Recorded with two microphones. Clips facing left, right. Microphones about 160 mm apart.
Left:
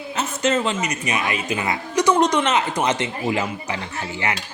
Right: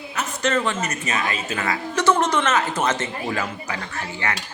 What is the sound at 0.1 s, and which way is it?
Speech, 25° left (ahead or behind).